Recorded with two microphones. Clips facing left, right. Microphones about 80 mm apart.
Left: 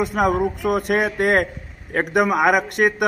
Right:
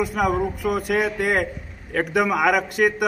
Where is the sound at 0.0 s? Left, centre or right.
Left.